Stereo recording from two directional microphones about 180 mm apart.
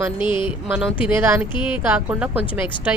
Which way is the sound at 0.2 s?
25° left (ahead or behind).